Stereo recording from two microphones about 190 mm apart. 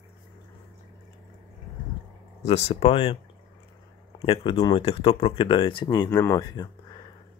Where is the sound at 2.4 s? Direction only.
35° left (ahead or behind).